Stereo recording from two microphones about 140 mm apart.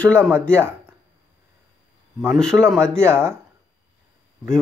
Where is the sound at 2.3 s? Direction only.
5° left (ahead or behind).